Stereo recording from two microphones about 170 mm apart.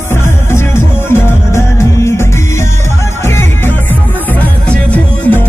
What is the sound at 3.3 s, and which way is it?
Music, 15° left (ahead or behind).